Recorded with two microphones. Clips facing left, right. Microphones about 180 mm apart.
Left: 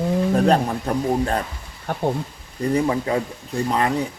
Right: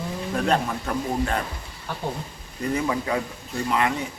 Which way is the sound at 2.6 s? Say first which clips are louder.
Left 5 dB; 35° left (ahead or behind).